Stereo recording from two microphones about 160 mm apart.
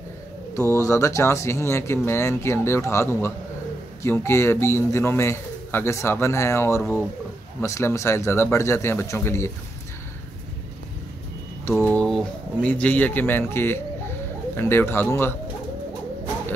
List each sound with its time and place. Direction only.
0.6 s speech: 20° left (ahead or behind)
11.6 s speech: 15° left (ahead or behind)